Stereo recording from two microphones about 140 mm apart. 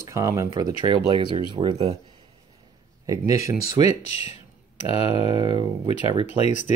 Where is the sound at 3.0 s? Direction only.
25° right (ahead or behind).